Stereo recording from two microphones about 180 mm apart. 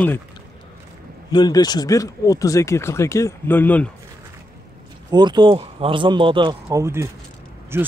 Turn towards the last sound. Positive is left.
turn(degrees=-15)  # may be behind; listen again after turning